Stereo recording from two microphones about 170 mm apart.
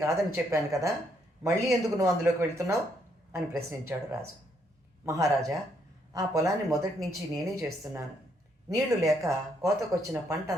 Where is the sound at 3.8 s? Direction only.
15° right (ahead or behind).